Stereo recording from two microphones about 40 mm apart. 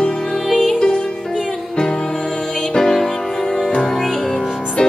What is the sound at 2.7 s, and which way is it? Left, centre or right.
Music, centre.